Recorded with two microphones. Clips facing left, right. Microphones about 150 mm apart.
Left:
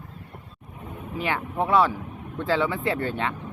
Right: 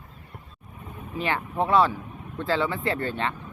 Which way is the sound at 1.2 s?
10° left (ahead or behind).